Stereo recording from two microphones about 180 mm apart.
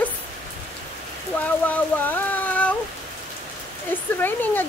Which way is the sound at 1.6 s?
10° left (ahead or behind).